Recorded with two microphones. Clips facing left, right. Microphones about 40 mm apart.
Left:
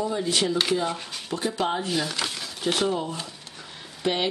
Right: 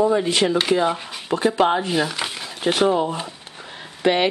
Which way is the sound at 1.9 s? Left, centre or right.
Centre.